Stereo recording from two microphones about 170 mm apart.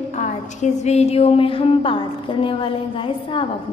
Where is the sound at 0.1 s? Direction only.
45° left (ahead or behind).